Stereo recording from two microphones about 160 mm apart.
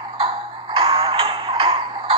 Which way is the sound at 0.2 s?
35° right (ahead or behind).